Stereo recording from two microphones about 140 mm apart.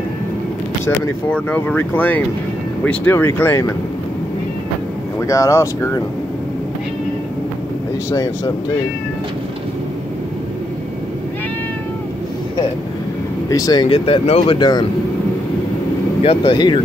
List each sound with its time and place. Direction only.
0.8 s speech: 10° left (ahead or behind)
5.2 s speech: 25° left (ahead or behind)
13.5 s speech: 25° left (ahead or behind)
13.8 s speech: 40° left (ahead or behind)
16.2 s speech: 40° left (ahead or behind)